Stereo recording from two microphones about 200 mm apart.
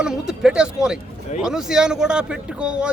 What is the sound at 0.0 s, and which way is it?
Speech, 5° right (ahead or behind).